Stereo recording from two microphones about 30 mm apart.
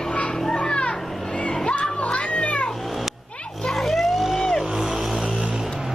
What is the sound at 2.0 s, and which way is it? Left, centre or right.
Cat, left.